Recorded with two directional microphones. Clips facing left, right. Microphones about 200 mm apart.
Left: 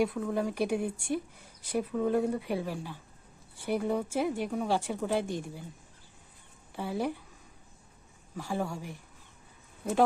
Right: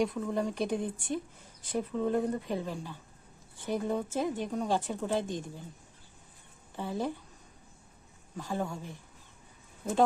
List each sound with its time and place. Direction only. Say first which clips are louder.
0.0 s speech: left 1 dB; 5° left (ahead or behind)
6.7 s speech: left 1 dB; 10° left (ahead or behind)
8.4 s speech: left 1 dB; 10° left (ahead or behind)